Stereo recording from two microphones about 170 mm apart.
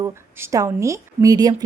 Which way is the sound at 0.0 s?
15° right (ahead or behind).